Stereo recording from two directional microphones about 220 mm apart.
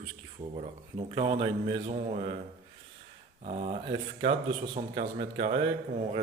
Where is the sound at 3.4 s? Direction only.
30° right (ahead or behind).